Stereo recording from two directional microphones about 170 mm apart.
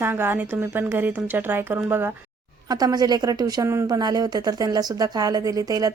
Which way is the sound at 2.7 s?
25° right (ahead or behind).